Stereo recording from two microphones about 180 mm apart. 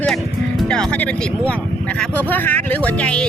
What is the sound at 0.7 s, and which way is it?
Speech, 5° left (ahead or behind).